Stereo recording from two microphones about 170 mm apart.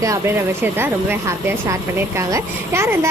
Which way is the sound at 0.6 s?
10° right (ahead or behind).